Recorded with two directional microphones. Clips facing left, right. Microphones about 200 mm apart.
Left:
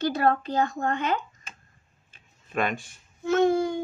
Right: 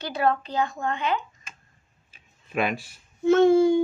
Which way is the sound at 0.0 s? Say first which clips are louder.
Left 1 dB; 50° left (ahead or behind).